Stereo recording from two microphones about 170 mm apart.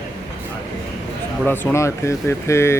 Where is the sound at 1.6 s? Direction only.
15° left (ahead or behind).